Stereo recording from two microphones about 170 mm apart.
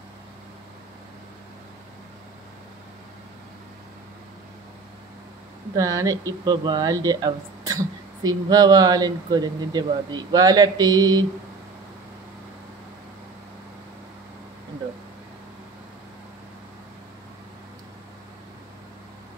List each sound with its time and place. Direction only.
5.8 s speech: 20° right (ahead or behind)